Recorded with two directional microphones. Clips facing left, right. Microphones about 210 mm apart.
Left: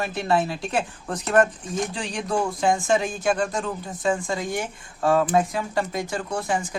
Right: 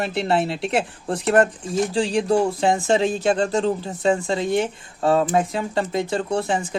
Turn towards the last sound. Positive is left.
turn(degrees=-25)  # may be behind; listen again after turning